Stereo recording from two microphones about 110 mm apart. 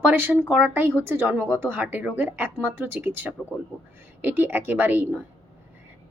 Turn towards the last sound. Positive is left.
turn(degrees=-15)  # may be behind; listen again after turning